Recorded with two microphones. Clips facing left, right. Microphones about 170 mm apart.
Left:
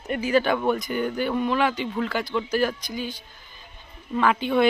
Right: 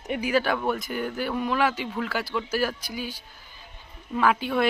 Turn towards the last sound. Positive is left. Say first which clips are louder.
# left 2 dB
turn(degrees=-5)  # may be behind; listen again after turning